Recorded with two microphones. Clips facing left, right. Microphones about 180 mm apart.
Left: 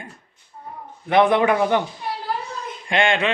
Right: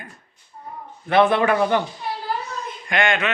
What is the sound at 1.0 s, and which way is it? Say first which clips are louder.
Speech: left 1 dB; 15° left (ahead or behind).